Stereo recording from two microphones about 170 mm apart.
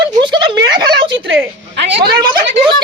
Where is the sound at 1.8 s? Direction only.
80° right.